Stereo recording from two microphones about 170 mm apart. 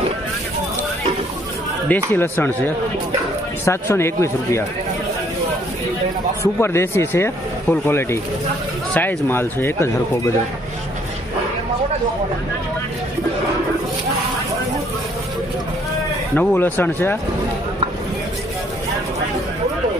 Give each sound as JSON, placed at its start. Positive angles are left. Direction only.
{"t": 1.9, "sound": "speech", "side_deg": 10}
{"t": 6.4, "sound": "speech", "side_deg": 15}
{"t": 16.3, "sound": "speech", "side_deg": 10}